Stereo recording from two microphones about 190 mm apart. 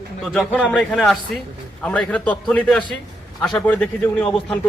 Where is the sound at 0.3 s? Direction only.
Centre (ahead or behind).